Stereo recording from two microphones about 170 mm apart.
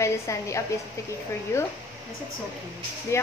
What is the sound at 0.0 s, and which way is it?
Speech, 20° left (ahead or behind).